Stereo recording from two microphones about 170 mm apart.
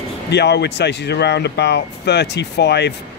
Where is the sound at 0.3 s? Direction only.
85° left.